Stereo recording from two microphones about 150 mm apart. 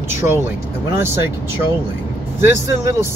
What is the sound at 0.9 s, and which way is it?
Speech, 15° right (ahead or behind).